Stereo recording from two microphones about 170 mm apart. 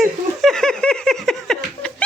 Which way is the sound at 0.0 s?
Centre (ahead or behind).